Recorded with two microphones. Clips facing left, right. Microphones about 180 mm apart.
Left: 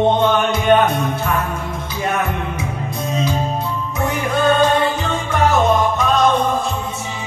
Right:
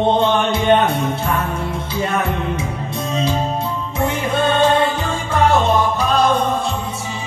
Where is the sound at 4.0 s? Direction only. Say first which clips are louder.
Even; 25° right (ahead or behind).